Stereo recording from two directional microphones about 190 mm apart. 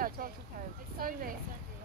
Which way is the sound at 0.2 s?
50° right (ahead or behind).